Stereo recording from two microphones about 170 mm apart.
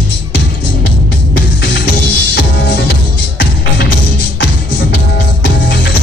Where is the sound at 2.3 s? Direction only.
85° left.